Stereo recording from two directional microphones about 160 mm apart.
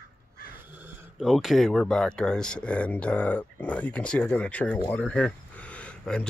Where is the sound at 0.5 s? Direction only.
10° right (ahead or behind).